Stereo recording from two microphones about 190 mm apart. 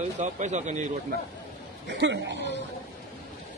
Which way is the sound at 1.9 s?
65° right (ahead or behind).